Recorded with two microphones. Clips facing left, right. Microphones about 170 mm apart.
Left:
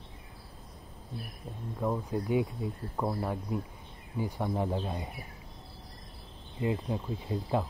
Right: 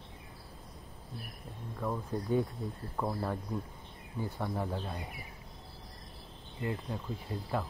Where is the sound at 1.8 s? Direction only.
15° left (ahead or behind).